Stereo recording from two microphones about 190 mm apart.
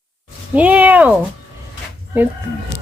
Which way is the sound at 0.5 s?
5° right (ahead or behind).